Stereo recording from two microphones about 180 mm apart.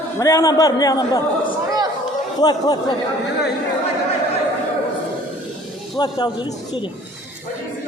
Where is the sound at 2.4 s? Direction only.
20° left (ahead or behind).